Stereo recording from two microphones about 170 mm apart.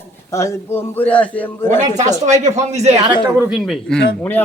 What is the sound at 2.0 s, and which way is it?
Speech, 45° right (ahead or behind).